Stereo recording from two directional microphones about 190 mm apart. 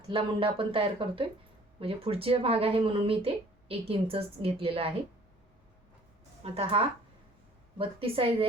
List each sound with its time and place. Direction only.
0.1 s speech: 30° right (ahead or behind)
6.4 s speech: 30° right (ahead or behind)